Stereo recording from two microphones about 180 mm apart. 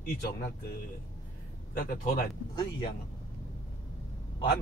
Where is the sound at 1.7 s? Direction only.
55° left (ahead or behind).